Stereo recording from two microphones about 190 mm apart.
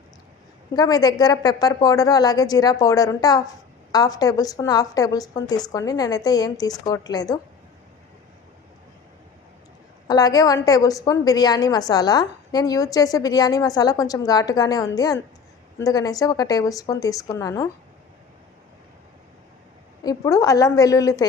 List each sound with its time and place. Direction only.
0.8 s a woman's voice: 20° left (ahead or behind)
10.1 s a woman's voice: 20° left (ahead or behind)
20.1 s a woman's voice: 15° left (ahead or behind)